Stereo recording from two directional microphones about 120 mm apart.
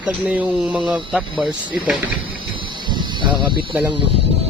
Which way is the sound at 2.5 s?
40° right (ahead or behind).